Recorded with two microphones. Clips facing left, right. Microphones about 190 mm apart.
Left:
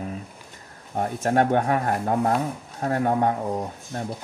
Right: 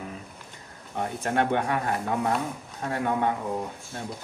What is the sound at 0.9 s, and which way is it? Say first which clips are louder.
Speech: left 5 dB; 45° left (ahead or behind).